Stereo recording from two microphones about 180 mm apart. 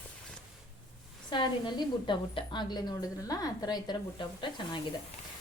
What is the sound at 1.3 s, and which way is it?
A woman's voice, 25° left (ahead or behind).